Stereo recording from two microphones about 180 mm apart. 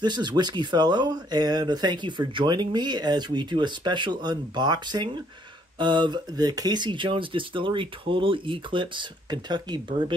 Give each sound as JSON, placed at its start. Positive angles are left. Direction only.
{"t": 0.0, "sound": "speech", "side_deg": -25}